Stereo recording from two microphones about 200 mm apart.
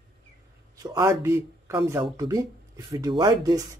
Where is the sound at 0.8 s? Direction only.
15° right (ahead or behind).